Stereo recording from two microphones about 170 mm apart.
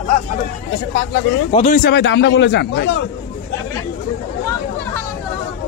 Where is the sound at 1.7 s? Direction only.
80° left.